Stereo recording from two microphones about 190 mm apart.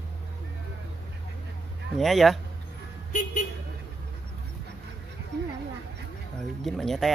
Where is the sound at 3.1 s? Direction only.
40° left (ahead or behind).